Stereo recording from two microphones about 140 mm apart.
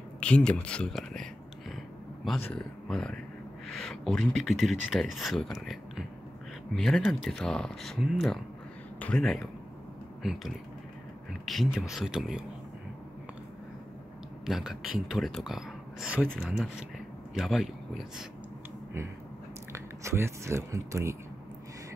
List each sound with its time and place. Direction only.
0.2 s speech: 5° left (ahead or behind)
2.4 s speech: 5° left (ahead or behind)
11.4 s speech: centre (ahead or behind)
14.4 s speech: 5° right (ahead or behind)
19.7 s speech: 20° right (ahead or behind)